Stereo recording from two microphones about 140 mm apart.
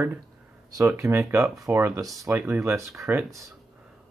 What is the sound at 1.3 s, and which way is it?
Speech, 20° right (ahead or behind).